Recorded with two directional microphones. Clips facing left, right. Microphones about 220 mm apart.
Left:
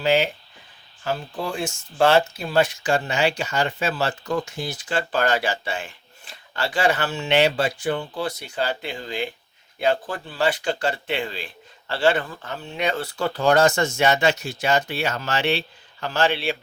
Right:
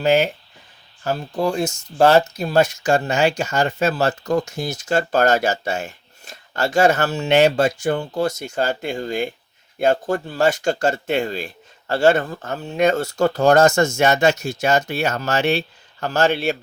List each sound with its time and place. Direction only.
0.0 s speech: 45° right (ahead or behind)